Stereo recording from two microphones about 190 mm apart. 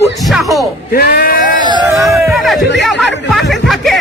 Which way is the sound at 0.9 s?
50° left (ahead or behind).